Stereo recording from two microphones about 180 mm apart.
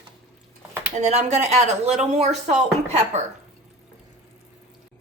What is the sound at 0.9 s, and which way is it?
A woman's voice, 40° right (ahead or behind).